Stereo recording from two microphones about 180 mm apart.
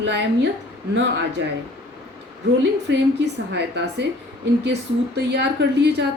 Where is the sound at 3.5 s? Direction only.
70° right (ahead or behind).